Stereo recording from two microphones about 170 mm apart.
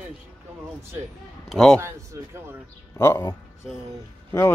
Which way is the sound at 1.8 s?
15° right (ahead or behind).